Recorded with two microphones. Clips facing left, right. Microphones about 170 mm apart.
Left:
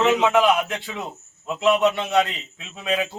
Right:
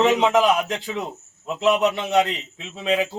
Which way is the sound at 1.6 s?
30° right (ahead or behind).